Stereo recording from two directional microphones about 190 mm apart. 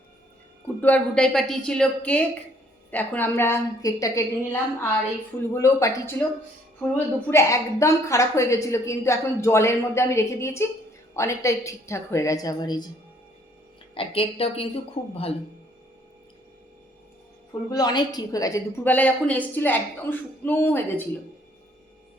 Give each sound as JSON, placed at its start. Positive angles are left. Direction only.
{"t": 0.8, "sound": "a woman's voice", "side_deg": 10}
{"t": 13.9, "sound": "a woman's voice", "side_deg": 30}
{"t": 17.5, "sound": "a woman's voice", "side_deg": 20}